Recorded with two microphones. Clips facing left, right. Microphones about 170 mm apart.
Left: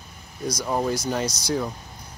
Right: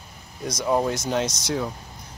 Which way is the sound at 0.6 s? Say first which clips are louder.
Right 3 dB; 5° right (ahead or behind).